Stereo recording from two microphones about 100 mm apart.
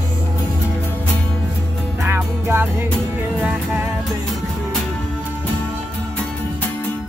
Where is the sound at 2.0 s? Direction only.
25° right (ahead or behind).